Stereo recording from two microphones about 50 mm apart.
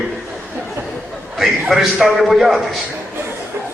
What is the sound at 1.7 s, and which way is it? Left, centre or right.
Speech, centre.